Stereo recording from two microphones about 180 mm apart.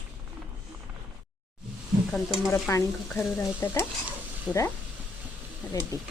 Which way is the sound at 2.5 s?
15° left (ahead or behind).